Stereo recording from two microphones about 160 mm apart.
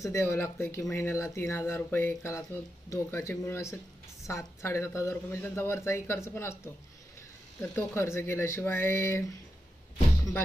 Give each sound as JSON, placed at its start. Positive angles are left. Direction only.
{"t": 0.0, "sound": "a woman's voice", "side_deg": 15}
{"t": 7.6, "sound": "a woman's voice", "side_deg": 15}